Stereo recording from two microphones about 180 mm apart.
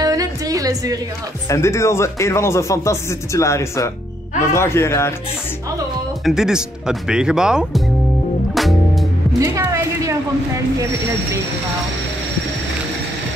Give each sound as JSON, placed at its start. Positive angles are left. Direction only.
{"t": 0.0, "sound": "music", "side_deg": -20}
{"t": 1.5, "sound": "speech", "side_deg": 15}
{"t": 6.2, "sound": "speech", "side_deg": -5}
{"t": 9.4, "sound": "music", "side_deg": -15}